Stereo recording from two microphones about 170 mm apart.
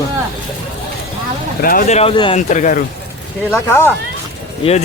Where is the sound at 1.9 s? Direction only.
35° left (ahead or behind).